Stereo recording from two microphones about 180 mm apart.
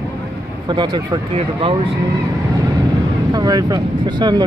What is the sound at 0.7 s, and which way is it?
Speech, 25° right (ahead or behind).